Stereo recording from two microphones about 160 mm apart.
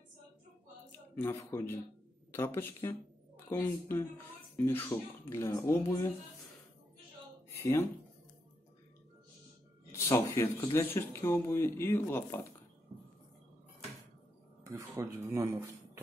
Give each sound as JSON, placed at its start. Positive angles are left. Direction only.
{"t": 1.1, "sound": "speech", "side_deg": 15}
{"t": 7.4, "sound": "a sound", "side_deg": 15}
{"t": 9.9, "sound": "speech", "side_deg": 15}
{"t": 14.6, "sound": "speech", "side_deg": -20}